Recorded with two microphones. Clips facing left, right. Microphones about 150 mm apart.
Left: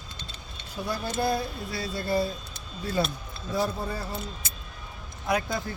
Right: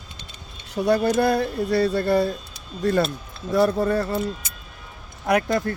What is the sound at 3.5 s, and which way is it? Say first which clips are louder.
Speech: right 10 dB; 75° right (ahead or behind).